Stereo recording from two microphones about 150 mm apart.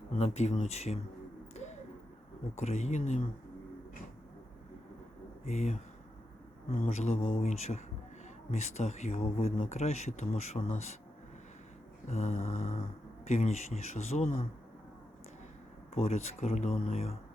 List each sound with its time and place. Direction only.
0.2 s speech: 50° left (ahead or behind)
2.6 s speech: 50° left (ahead or behind)
5.5 s speech: 45° left (ahead or behind)
12.0 s speech: 45° left (ahead or behind)
12.3 s mantra: 60° left (ahead or behind)
13.2 s speech: 50° left (ahead or behind)
16.0 s speech: 50° left (ahead or behind)